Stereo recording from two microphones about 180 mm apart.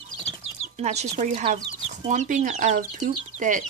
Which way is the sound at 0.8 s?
40° right (ahead or behind).